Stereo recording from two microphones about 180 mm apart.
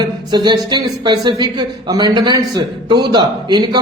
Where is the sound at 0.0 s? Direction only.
25° right (ahead or behind).